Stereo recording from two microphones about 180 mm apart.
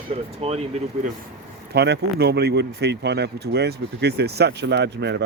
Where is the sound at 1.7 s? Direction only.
65° right (ahead or behind).